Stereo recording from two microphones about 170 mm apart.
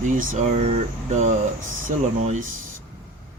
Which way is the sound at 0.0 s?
50° right (ahead or behind).